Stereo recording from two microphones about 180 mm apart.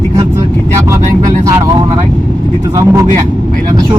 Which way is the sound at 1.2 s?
20° right (ahead or behind).